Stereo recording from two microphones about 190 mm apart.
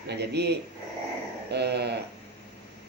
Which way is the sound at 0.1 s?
60° right (ahead or behind).